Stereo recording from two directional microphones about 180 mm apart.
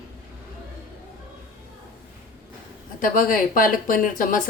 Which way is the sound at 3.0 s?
50° left (ahead or behind).